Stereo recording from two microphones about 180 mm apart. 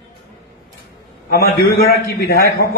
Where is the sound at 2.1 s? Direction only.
60° left (ahead or behind).